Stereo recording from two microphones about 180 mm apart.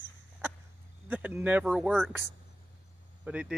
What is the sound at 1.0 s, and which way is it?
Speech, 10° right (ahead or behind).